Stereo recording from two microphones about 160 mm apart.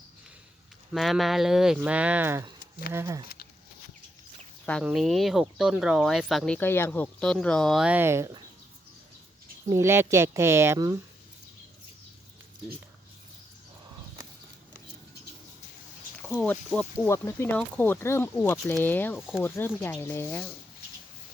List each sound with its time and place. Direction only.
0.9 s speech: centre (ahead or behind); by 3.2 s 20° right (ahead or behind)
4.8 s speech: 5° right (ahead or behind); by 8.4 s 20° right (ahead or behind)
9.6 s speech: 15° right (ahead or behind)
16.7 s speech: 10° left (ahead or behind)